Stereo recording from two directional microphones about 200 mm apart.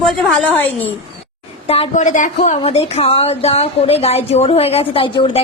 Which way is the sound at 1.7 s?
35° left (ahead or behind).